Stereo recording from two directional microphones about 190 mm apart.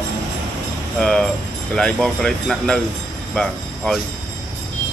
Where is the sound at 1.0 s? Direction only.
5° left (ahead or behind).